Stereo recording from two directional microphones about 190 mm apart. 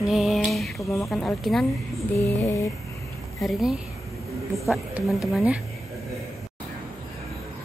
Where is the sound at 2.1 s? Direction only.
15° left (ahead or behind).